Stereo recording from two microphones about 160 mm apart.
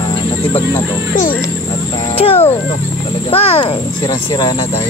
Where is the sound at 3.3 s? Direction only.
35° left (ahead or behind).